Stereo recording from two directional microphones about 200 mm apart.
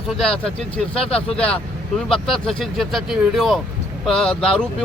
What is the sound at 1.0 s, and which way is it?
Speech, 30° left (ahead or behind).